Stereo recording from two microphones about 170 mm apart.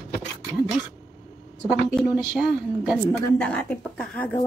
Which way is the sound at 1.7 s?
Centre (ahead or behind).